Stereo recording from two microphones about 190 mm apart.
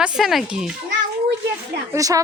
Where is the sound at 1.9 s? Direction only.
15° right (ahead or behind).